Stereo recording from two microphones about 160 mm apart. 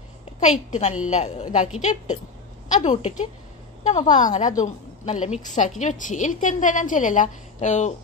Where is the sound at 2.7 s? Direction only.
45° left (ahead or behind).